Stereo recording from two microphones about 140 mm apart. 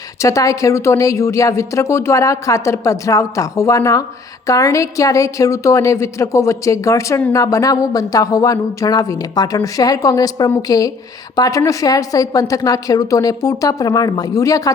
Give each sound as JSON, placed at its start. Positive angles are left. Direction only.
{"t": 0.2, "sound": "speech", "side_deg": 20}